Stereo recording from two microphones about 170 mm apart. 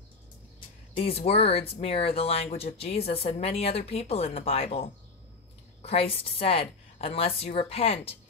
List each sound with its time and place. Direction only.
0.9 s speech: 35° left (ahead or behind)